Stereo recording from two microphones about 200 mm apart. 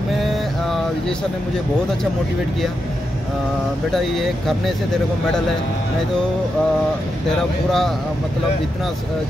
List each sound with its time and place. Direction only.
0.2 s a sound: centre (ahead or behind)
3.9 s speech: centre (ahead or behind)
7.2 s speech: centre (ahead or behind)